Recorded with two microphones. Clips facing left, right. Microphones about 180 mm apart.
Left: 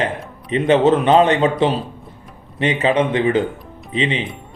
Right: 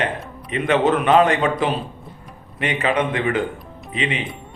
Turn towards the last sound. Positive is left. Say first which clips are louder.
# left 4 dB
turn(degrees=30)  # may be behind; listen again after turning